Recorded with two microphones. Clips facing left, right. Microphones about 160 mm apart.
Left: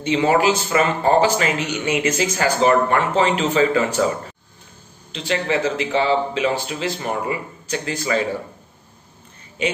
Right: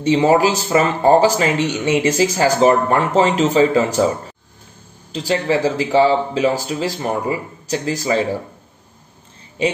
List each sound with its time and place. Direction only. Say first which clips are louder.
0.0 s speech: right 3 dB; 35° right (ahead or behind)
5.1 s speech: right 3 dB; 35° right (ahead or behind)